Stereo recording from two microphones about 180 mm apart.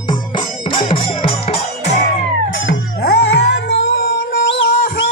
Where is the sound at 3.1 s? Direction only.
65° left (ahead or behind).